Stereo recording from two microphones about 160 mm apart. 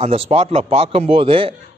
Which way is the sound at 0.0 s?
40° right (ahead or behind).